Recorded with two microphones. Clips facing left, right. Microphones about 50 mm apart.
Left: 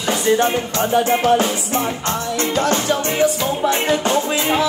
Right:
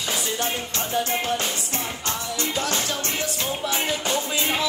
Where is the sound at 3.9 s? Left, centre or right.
Left.